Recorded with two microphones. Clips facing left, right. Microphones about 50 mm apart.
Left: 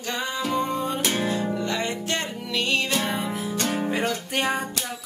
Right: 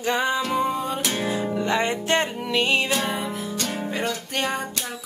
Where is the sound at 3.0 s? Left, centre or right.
Centre.